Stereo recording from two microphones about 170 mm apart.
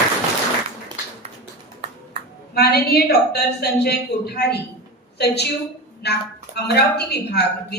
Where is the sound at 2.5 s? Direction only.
70° left (ahead or behind).